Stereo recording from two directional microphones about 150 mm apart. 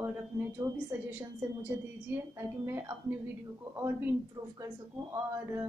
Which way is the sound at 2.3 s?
15° right (ahead or behind).